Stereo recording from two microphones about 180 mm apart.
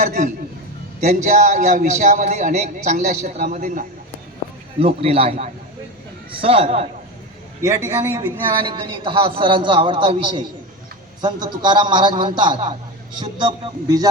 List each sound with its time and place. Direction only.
1.0 s a man's voice: 40° right (ahead or behind)
4.8 s a man's voice: 30° right (ahead or behind)
7.6 s a man's voice: 20° right (ahead or behind)